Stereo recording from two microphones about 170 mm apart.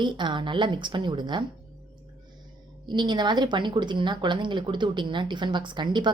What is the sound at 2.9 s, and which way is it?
A woman's voice, 25° right (ahead or behind).